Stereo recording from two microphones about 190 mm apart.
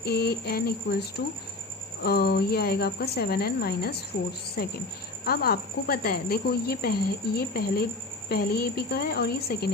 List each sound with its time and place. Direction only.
0.0 s a woman's voice: 55° left (ahead or behind)